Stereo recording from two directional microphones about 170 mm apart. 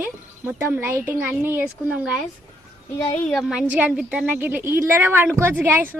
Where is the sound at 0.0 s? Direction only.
10° right (ahead or behind).